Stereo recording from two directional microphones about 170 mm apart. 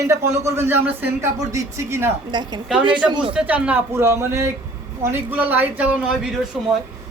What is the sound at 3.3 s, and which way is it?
Speech, 10° right (ahead or behind).